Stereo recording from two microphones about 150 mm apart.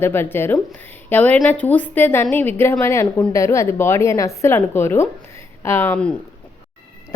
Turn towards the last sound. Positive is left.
turn(degrees=10)  # may be behind; listen again after turning